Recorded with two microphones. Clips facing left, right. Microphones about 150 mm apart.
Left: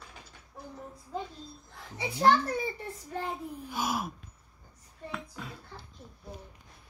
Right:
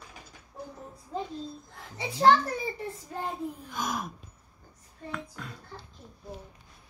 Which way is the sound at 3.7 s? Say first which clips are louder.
Left 5 dB; 5° left (ahead or behind).